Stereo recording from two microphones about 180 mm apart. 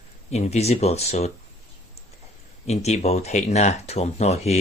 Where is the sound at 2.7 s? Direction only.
40° left (ahead or behind).